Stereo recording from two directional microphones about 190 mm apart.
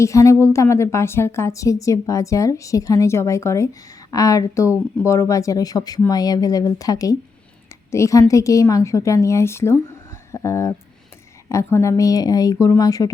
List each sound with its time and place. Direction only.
0.0 s a woman's voice: 15° left (ahead or behind)